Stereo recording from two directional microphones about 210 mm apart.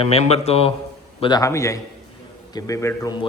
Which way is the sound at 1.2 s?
20° left (ahead or behind).